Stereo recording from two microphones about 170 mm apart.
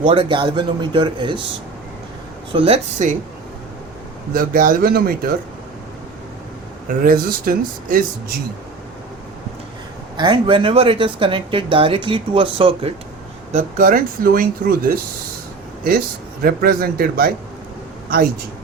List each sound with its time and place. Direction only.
0.0 s a man's voice: 30° right (ahead or behind)
2.5 s speech: 35° right (ahead or behind)
4.4 s speech: 55° right (ahead or behind)
7.0 s speech: 60° right (ahead or behind)
10.2 s speech: 30° right (ahead or behind)
13.5 s speech: 50° right (ahead or behind)
16.4 s speech: 60° right (ahead or behind)